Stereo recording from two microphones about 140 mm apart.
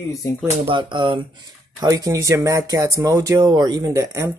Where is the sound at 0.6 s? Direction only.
35° right (ahead or behind).